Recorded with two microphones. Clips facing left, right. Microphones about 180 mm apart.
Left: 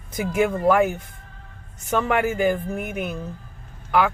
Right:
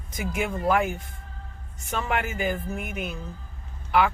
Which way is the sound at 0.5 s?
45° left (ahead or behind).